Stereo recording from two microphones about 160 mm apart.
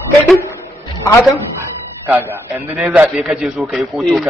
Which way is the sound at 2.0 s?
15° right (ahead or behind).